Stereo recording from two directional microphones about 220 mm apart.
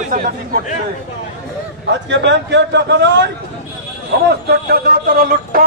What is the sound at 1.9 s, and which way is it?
A man's voice, 50° right (ahead or behind).